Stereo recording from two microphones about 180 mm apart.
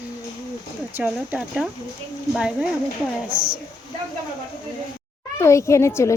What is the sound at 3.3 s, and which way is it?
Speech, 30° right (ahead or behind).